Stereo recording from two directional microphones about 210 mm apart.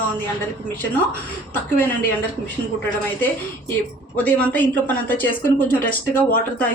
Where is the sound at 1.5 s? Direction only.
10° left (ahead or behind).